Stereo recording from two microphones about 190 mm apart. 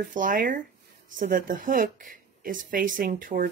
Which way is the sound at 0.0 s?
45° right (ahead or behind).